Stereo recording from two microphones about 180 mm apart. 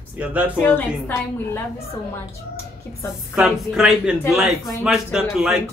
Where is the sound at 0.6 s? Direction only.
10° left (ahead or behind).